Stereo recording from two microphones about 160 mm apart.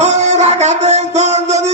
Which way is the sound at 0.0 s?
45° right (ahead or behind).